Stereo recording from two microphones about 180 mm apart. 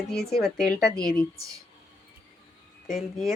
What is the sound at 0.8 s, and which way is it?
Speech, 60° left (ahead or behind).